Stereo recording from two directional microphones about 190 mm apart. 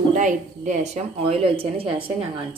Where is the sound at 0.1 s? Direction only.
40° right (ahead or behind).